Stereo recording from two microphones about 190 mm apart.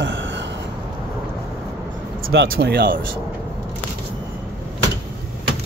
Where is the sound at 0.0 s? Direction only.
75° right (ahead or behind).